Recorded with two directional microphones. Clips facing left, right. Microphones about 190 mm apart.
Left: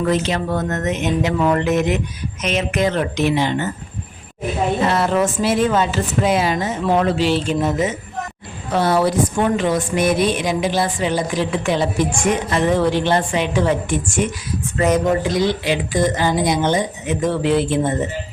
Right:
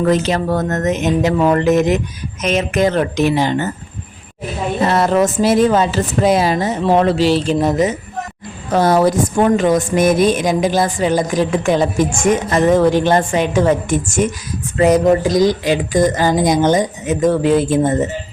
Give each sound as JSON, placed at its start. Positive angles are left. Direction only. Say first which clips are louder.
{"t": 0.0, "sound": "a woman's voice", "louder": "right 4 dB", "side_deg": -40}
{"t": 4.8, "sound": "a woman's voice", "louder": "right 6 dB", "side_deg": -40}